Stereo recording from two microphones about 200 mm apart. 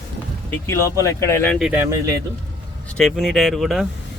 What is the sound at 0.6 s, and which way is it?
Speech, 15° left (ahead or behind).